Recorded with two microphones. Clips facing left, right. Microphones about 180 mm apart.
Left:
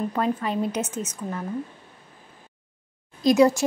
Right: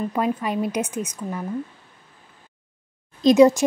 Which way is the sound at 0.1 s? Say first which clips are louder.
Right 2 dB; 10° right (ahead or behind).